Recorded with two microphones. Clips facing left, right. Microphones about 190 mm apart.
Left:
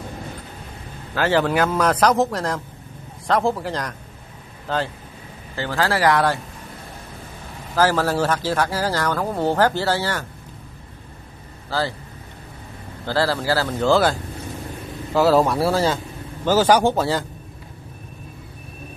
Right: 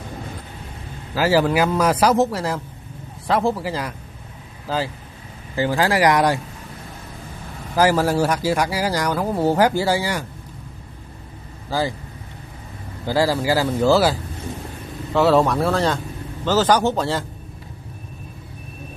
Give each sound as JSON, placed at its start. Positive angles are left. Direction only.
{"t": 1.1, "sound": "speech", "side_deg": -5}
{"t": 5.6, "sound": "speech", "side_deg": -15}
{"t": 7.7, "sound": "speech", "side_deg": -15}
{"t": 13.0, "sound": "speech", "side_deg": -10}
{"t": 15.1, "sound": "a man's voice", "side_deg": 0}